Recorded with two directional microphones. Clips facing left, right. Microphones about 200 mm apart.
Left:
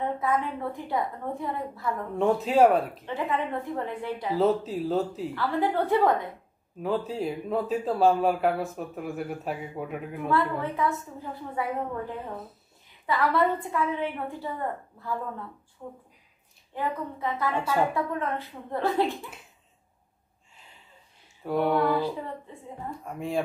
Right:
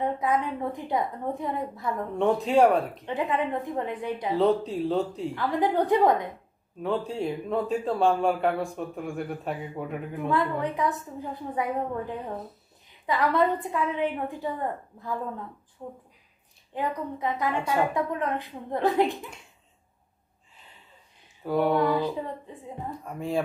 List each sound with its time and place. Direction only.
0.0 s a woman's voice: 20° right (ahead or behind)
2.1 s a man's voice: centre (ahead or behind)
3.1 s a woman's voice: 20° right (ahead or behind)
4.4 s a man's voice: 5° left (ahead or behind)
5.3 s a woman's voice: 20° right (ahead or behind)
6.8 s a man's voice: centre (ahead or behind)
10.3 s a woman's voice: 15° right (ahead or behind)
13.0 s a woman's voice: 15° right (ahead or behind)
16.7 s a woman's voice: 15° right (ahead or behind)
21.5 s a man's voice: centre (ahead or behind)
21.9 s a woman's voice: 20° right (ahead or behind)
22.8 s a man's voice: centre (ahead or behind)